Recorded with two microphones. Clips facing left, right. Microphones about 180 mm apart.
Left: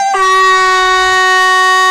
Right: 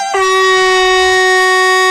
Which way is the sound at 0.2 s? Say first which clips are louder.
Right 3 dB; 15° right (ahead or behind).